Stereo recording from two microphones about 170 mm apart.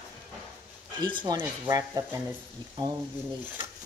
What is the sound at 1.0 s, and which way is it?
Speech, 25° right (ahead or behind).